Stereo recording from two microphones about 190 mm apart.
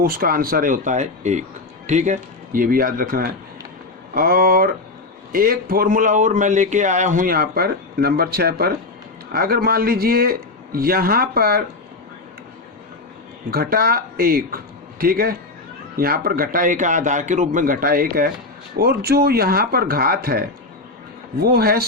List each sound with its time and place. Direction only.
0.0 s a man's voice: 50° right (ahead or behind)
13.5 s a man's voice: 50° right (ahead or behind)